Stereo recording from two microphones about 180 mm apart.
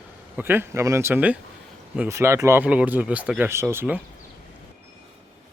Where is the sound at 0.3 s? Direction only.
10° right (ahead or behind).